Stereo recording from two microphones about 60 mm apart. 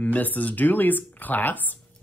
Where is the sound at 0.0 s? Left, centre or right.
Left.